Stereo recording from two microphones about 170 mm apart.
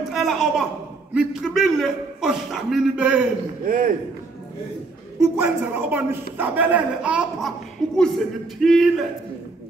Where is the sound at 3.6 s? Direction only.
55° right (ahead or behind).